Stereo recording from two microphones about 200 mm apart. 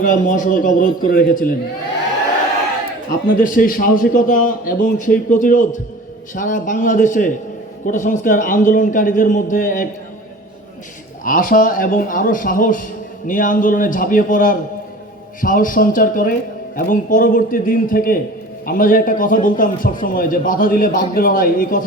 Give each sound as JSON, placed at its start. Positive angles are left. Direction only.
{"t": 0.0, "sound": "a man's voice", "side_deg": 40}
{"t": 3.4, "sound": "a man's voice", "side_deg": 45}
{"t": 11.2, "sound": "a man's voice", "side_deg": 45}